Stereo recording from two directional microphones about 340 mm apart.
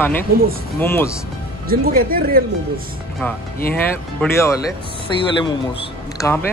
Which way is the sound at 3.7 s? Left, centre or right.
Centre.